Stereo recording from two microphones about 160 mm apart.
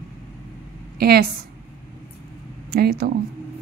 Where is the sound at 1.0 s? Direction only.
75° right (ahead or behind).